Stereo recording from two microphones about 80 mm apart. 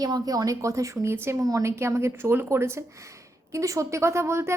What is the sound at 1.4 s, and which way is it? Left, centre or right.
Speech, right.